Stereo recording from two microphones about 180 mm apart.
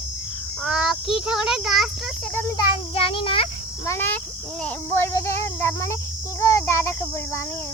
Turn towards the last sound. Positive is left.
turn(degrees=15)  # may be behind; listen again after turning